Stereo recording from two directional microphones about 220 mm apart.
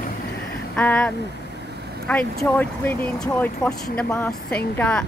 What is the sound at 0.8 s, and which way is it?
Speech, 5° left (ahead or behind).